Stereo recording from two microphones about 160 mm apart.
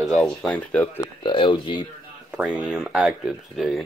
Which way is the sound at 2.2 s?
5° right (ahead or behind).